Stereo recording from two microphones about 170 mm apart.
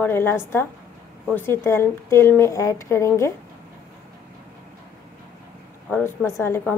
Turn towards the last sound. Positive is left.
turn(degrees=15)  # may be behind; listen again after turning